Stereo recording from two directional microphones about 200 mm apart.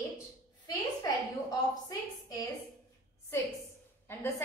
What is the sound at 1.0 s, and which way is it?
A woman's voice, 20° left (ahead or behind).